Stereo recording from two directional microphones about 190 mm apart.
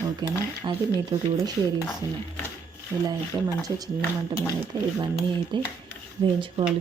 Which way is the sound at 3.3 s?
20° right (ahead or behind).